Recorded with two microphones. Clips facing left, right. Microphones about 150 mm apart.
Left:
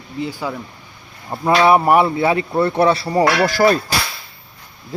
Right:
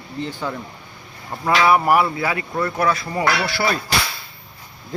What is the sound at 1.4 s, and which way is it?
Speech, 25° left (ahead or behind).